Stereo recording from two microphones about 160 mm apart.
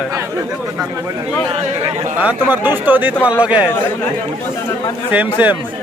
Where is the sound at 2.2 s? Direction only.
10° right (ahead or behind).